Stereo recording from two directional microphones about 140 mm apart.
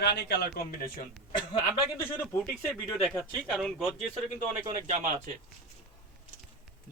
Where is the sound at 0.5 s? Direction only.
90° left.